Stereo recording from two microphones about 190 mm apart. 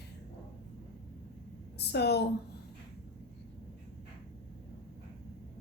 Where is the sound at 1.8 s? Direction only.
60° left (ahead or behind).